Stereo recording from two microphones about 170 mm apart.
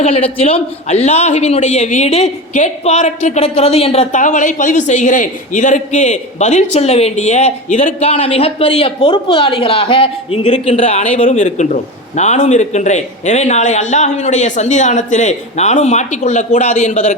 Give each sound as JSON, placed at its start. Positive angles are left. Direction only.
{"t": 0.0, "sound": "a man's voice", "side_deg": 35}
{"t": 11.3, "sound": "a man's voice", "side_deg": 45}